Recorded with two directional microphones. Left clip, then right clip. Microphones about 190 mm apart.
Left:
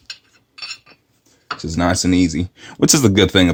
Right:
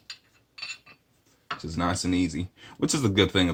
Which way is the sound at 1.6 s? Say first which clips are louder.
Left 11 dB; 50° left (ahead or behind).